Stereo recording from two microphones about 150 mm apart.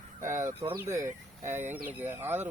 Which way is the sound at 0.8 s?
20° right (ahead or behind).